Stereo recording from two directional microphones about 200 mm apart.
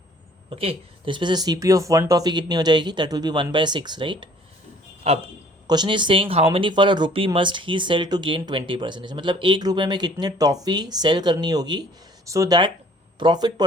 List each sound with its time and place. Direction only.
0.5 s speech: 30° right (ahead or behind)